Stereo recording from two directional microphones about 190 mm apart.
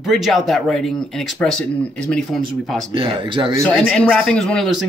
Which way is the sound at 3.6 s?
5° left (ahead or behind).